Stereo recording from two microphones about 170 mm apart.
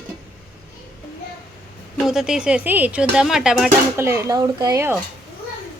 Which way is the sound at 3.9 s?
15° right (ahead or behind).